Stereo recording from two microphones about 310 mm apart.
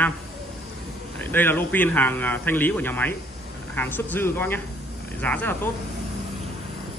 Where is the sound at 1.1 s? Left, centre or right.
Centre.